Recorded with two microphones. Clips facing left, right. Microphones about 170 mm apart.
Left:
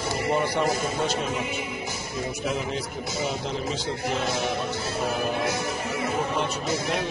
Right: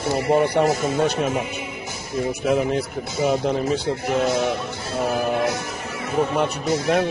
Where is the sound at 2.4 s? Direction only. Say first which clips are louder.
Right 9 dB; 55° right (ahead or behind).